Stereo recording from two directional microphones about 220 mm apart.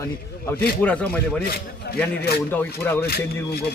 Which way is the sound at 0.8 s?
5° left (ahead or behind).